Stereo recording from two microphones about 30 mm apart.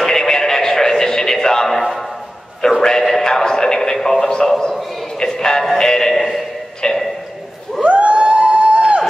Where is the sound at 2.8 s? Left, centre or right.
Centre.